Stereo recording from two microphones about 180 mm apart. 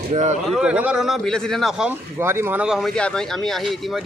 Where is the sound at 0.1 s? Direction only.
40° right (ahead or behind).